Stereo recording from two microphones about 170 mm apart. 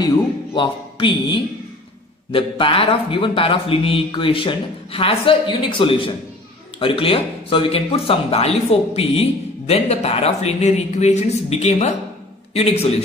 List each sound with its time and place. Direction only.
0.6 s speech: 30° left (ahead or behind)